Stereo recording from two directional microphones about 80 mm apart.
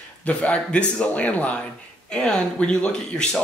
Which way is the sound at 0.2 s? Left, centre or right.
Centre.